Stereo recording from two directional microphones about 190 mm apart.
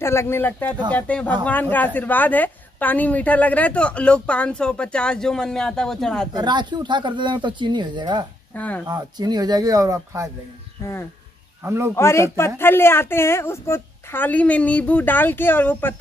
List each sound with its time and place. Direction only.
0.0 s a woman's voice: 15° left (ahead or behind)
6.3 s speech: 25° right (ahead or behind)
8.5 s speech: 10° left (ahead or behind)
8.8 s speech: 20° right (ahead or behind)
10.8 s speech: 15° left (ahead or behind)
11.6 s speech: 15° right (ahead or behind)
11.9 s speech: 15° left (ahead or behind)